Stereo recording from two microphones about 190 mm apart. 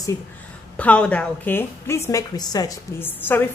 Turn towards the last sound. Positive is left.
turn(degrees=10)  # may be behind; listen again after turning